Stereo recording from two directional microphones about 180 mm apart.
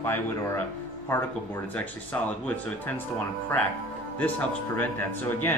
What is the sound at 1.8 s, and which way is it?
Speech, 10° left (ahead or behind).